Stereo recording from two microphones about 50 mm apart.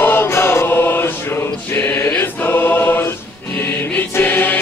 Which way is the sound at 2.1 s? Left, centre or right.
Left.